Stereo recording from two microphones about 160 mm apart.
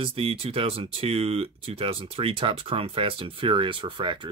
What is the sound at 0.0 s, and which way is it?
Speech, 35° right (ahead or behind).